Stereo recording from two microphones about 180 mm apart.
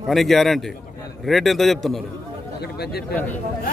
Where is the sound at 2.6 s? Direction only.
60° left (ahead or behind).